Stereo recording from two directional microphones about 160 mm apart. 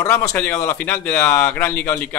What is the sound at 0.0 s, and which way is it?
A man's voice, 20° left (ahead or behind).